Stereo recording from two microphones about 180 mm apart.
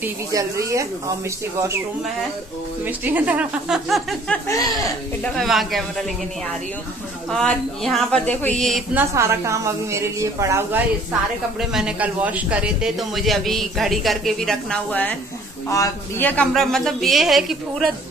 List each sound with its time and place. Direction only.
0.0 s a woman's voice: 15° right (ahead or behind)
2.8 s a woman's voice: 10° right (ahead or behind)
7.2 s a man's voice: 5° left (ahead or behind)
8.9 s a woman's voice: 15° right (ahead or behind)